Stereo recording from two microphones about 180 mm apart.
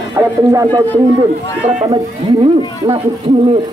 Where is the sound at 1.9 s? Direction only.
35° right (ahead or behind).